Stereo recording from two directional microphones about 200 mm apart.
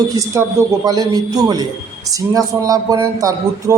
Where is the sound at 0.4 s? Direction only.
15° right (ahead or behind).